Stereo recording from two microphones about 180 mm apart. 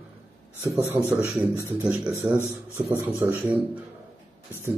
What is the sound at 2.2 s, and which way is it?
Speech, 15° right (ahead or behind).